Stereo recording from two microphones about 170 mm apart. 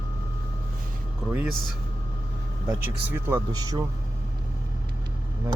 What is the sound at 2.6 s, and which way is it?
Speech, 10° right (ahead or behind).